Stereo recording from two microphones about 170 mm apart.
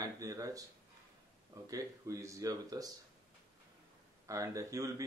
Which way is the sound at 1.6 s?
20° right (ahead or behind).